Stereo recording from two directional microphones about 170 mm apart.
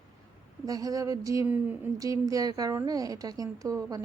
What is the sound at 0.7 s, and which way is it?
A woman's voice, 20° right (ahead or behind).